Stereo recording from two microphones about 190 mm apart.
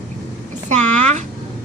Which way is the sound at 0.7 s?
40° right (ahead or behind).